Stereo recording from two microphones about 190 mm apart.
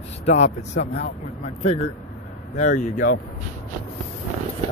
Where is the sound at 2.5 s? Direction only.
40° left (ahead or behind).